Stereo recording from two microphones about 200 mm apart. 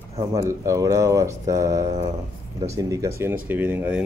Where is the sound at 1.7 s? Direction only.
35° right (ahead or behind).